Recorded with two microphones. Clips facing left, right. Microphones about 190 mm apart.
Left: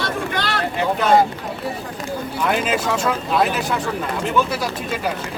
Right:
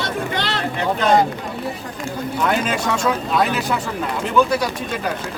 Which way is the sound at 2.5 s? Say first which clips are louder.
Left 1 dB; centre (ahead or behind).